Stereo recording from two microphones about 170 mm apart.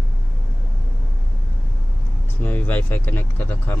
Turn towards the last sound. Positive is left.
turn(degrees=10)  # may be behind; listen again after turning